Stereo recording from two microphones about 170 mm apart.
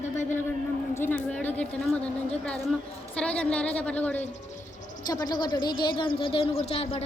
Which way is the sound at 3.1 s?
5° left (ahead or behind).